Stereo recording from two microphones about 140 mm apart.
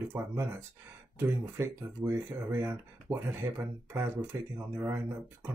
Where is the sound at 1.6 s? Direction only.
20° right (ahead or behind).